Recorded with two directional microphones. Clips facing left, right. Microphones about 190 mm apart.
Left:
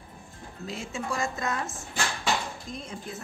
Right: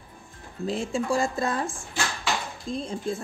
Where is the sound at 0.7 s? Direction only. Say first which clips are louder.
Right 7 dB; 30° right (ahead or behind).